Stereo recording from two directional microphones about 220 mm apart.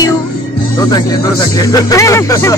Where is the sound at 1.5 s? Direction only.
15° left (ahead or behind).